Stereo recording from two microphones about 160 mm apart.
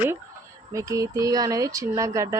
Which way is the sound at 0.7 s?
20° right (ahead or behind).